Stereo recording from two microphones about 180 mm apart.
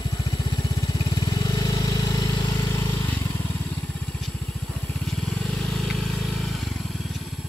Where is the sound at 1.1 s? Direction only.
20° left (ahead or behind).